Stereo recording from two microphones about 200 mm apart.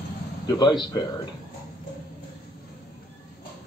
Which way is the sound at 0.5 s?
20° left (ahead or behind).